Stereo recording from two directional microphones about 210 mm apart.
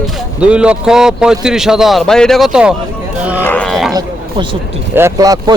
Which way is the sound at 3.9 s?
20° right (ahead or behind).